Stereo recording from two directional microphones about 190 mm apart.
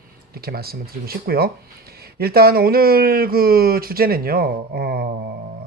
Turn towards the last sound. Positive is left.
turn(degrees=-55)  # may be behind; listen again after turning